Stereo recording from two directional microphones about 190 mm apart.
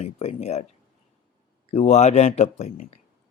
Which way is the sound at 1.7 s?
35° left (ahead or behind).